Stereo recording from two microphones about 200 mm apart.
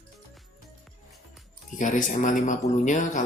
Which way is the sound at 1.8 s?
40° left (ahead or behind).